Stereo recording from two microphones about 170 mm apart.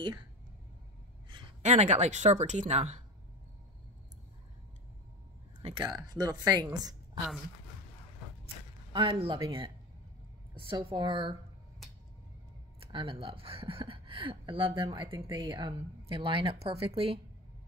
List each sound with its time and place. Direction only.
1.6 s speech: 45° right (ahead or behind)
5.6 s speech: 35° right (ahead or behind)
5.9 s speech: 25° right (ahead or behind)
8.9 s speech: 30° right (ahead or behind)
12.8 s speech: 30° right (ahead or behind)